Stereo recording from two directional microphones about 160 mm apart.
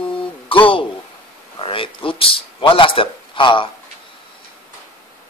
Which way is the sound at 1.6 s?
35° left (ahead or behind).